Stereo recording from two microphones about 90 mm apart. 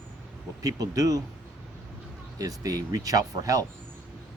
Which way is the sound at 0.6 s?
40° right (ahead or behind).